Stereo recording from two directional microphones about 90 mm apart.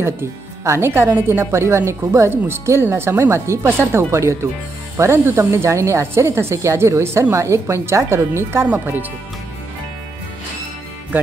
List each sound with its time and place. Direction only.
0.0 s speech: 30° right (ahead or behind)
8.6 s speech: 20° right (ahead or behind)